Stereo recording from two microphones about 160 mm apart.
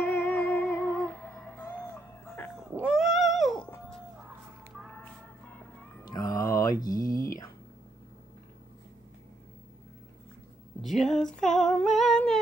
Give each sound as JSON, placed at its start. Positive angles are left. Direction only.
{"t": 0.0, "sound": "music", "side_deg": 10}
{"t": 2.7, "sound": "cat", "side_deg": -5}
{"t": 6.0, "sound": "mantra", "side_deg": 20}
{"t": 10.8, "sound": "speech", "side_deg": 0}
{"t": 11.5, "sound": "humming", "side_deg": 5}